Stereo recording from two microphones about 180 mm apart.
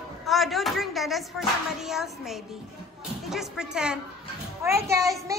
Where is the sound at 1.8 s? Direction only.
Centre (ahead or behind).